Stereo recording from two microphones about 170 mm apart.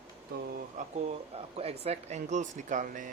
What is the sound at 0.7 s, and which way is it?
Speech, 40° right (ahead or behind).